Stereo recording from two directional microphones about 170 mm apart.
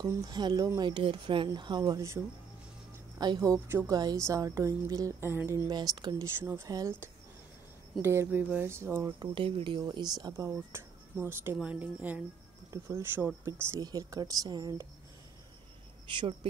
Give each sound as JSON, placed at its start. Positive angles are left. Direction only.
{"t": 0.0, "sound": "speech", "side_deg": -25}
{"t": 3.2, "sound": "speech", "side_deg": -25}
{"t": 5.7, "sound": "speech", "side_deg": -25}
{"t": 9.2, "sound": "speech", "side_deg": -30}
{"t": 16.1, "sound": "speech", "side_deg": -30}